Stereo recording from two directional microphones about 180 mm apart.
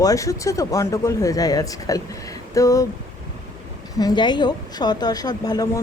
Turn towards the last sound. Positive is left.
turn(degrees=20)  # may be behind; listen again after turning